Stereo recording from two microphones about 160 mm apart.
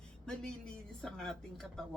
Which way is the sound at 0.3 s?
5° left (ahead or behind).